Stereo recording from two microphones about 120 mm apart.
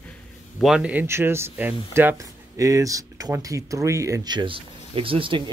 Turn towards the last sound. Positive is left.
turn(degrees=-40)  # may be behind; listen again after turning